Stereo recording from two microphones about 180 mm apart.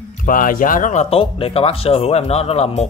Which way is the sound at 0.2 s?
50° left (ahead or behind).